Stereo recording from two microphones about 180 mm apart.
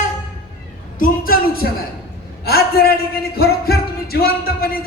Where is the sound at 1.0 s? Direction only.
55° left (ahead or behind).